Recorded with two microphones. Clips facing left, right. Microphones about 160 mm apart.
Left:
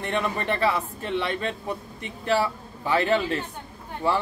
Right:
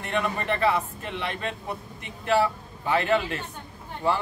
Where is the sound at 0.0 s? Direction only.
35° left (ahead or behind).